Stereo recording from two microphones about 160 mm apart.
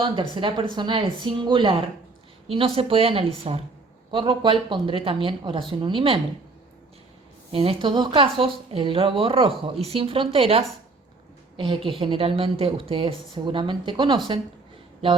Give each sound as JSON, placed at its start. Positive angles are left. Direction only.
{"t": 0.0, "sound": "a woman's voice", "side_deg": -30}
{"t": 7.5, "sound": "a woman's voice", "side_deg": -35}